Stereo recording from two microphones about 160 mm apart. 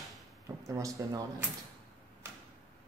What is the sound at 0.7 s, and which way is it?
Speech, 20° right (ahead or behind).